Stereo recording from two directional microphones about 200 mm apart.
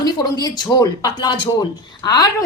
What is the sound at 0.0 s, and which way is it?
Speech, 20° left (ahead or behind).